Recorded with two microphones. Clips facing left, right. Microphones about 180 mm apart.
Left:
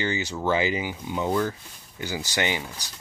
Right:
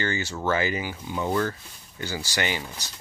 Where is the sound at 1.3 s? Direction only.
5° left (ahead or behind).